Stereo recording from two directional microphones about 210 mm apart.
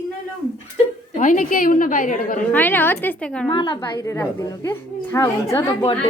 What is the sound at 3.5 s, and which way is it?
A woman's voice, 25° left (ahead or behind).